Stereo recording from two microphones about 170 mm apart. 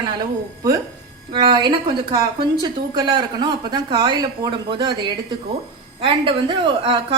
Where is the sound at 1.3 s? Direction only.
25° right (ahead or behind).